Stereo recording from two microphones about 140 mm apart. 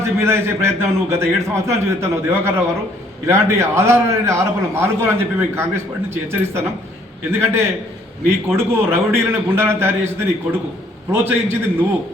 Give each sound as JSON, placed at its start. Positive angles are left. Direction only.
{"t": 0.0, "sound": "a man's voice", "side_deg": -20}
{"t": 11.1, "sound": "a man's voice", "side_deg": -15}